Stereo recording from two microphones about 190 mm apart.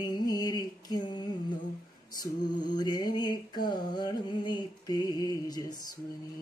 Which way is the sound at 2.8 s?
20° left (ahead or behind).